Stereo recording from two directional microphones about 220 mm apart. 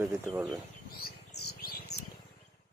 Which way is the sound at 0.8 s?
45° left (ahead or behind).